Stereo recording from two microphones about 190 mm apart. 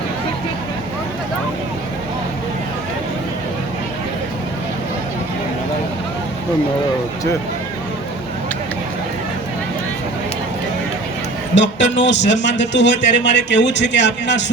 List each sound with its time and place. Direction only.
11.5 s a man's voice: 70° left (ahead or behind)